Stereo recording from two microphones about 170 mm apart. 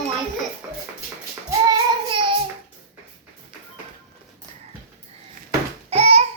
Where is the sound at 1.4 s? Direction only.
20° right (ahead or behind).